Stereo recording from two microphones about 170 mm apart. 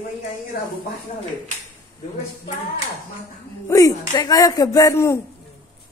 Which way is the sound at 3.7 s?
20° left (ahead or behind).